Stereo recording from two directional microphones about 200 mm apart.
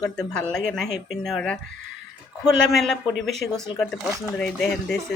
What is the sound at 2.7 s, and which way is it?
Speech, centre (ahead or behind).